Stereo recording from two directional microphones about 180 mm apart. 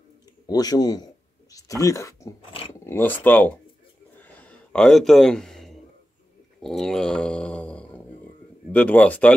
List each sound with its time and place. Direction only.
0.5 s speech: 20° left (ahead or behind)
4.2 s a sound: 5° left (ahead or behind)
8.7 s speech: 10° left (ahead or behind)